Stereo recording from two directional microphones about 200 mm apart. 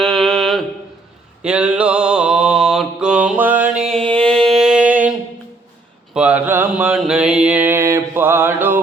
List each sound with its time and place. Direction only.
0.0 s mantra: centre (ahead or behind)
3.9 s a sound: 5° left (ahead or behind)
6.1 s mantra: 10° right (ahead or behind)